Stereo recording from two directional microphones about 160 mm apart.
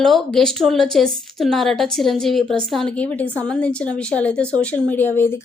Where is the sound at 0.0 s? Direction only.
5° left (ahead or behind).